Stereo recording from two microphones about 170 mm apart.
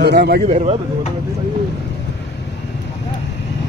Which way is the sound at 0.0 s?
75° right (ahead or behind).